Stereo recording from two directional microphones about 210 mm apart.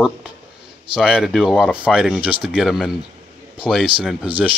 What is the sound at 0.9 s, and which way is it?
A man's voice, centre (ahead or behind).